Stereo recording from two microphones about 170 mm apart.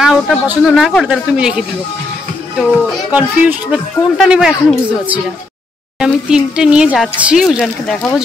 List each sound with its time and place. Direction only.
0.0 s speech: 5° right (ahead or behind)